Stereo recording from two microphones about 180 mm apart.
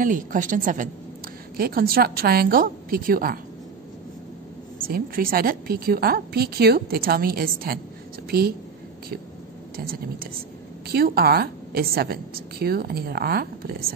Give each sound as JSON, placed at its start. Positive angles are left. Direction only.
{"t": 0.0, "sound": "a woman's voice", "side_deg": -45}
{"t": 4.8, "sound": "a woman's voice", "side_deg": -55}
{"t": 10.9, "sound": "a woman's voice", "side_deg": -60}